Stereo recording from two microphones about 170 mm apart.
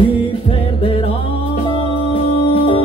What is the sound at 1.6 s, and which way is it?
Music, 35° left (ahead or behind).